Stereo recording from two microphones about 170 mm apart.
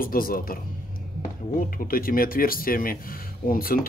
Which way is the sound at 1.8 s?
55° left (ahead or behind).